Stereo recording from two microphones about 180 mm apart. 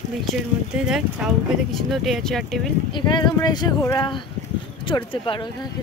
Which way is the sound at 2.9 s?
25° left (ahead or behind).